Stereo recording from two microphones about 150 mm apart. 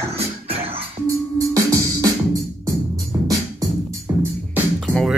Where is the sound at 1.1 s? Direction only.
20° right (ahead or behind).